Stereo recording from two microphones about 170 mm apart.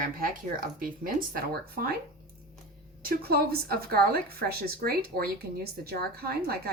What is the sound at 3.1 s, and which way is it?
Speech, 65° right (ahead or behind).